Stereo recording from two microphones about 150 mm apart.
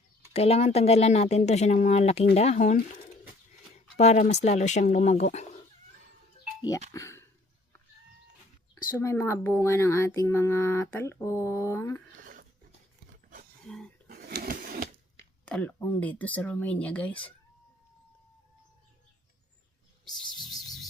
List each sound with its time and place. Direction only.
0.3 s speech: 45° left (ahead or behind)
3.9 s speech: 50° left (ahead or behind)
6.9 s speech: 20° left (ahead or behind)
9.0 s speech: 20° left (ahead or behind)
12.2 s dog: 65° right (ahead or behind)
13.7 s a sound: 5° left (ahead or behind)
14.1 s printer: 90° right; by 14.8 s 75° right (ahead or behind)
15.4 s speech: 10° left (ahead or behind)
20.1 s a sound: centre (ahead or behind)